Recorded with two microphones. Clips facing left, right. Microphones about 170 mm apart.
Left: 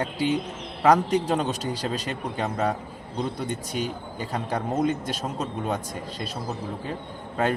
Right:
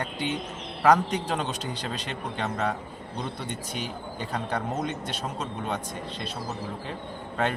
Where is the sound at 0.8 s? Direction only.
10° left (ahead or behind).